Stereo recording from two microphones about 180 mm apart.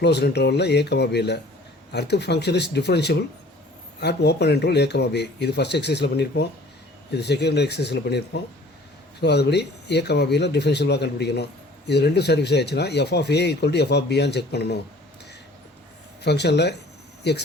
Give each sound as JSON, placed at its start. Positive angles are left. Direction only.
{"t": 0.0, "sound": "speech", "side_deg": 70}
{"t": 16.2, "sound": "speech", "side_deg": 70}